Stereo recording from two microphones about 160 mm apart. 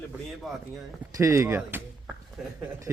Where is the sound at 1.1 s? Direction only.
20° right (ahead or behind).